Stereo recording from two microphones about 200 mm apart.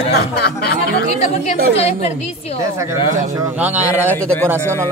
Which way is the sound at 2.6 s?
15° right (ahead or behind).